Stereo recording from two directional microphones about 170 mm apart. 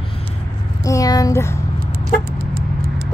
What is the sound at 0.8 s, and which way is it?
Speech, 20° left (ahead or behind).